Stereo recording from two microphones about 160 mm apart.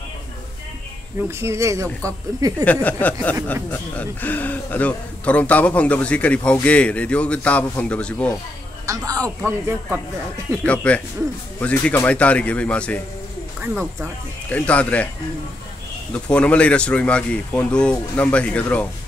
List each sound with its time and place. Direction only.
1.4 s a woman's voice: 20° right (ahead or behind)
2.6 s speech: 10° left (ahead or behind)
8.8 s a woman's voice: 20° right (ahead or behind)
10.6 s speech: 10° left (ahead or behind)
13.6 s speech: 15° right (ahead or behind)
14.5 s speech: 10° left (ahead or behind)
16.3 s speech: 5° left (ahead or behind)